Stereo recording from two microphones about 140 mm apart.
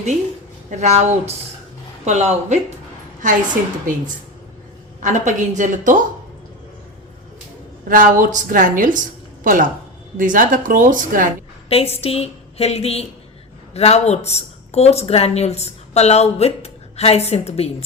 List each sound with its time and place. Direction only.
0.8 s speech: 55° right (ahead or behind)
3.2 s a woman's voice: 70° right (ahead or behind)
7.9 s a woman's voice: 75° right (ahead or behind)
11.7 s a woman's voice: 45° left (ahead or behind)